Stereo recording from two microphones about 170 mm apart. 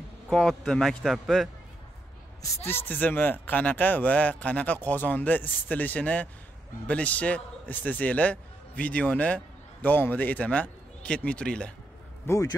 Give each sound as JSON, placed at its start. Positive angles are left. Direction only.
{"t": 0.3, "sound": "a man's voice", "side_deg": 5}
{"t": 2.6, "sound": "a man's voice", "side_deg": 15}
{"t": 12.3, "sound": "speech", "side_deg": 20}